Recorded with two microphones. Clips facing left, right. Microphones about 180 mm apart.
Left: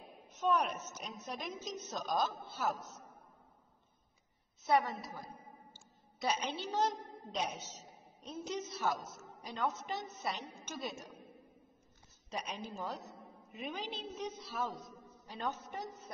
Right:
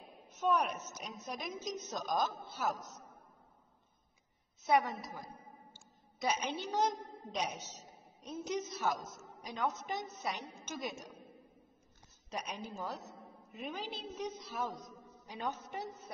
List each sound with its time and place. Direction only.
0.4 s a woman's voice: 10° right (ahead or behind)
4.6 s a woman's voice: 15° right (ahead or behind)
12.3 s a woman's voice: 10° right (ahead or behind)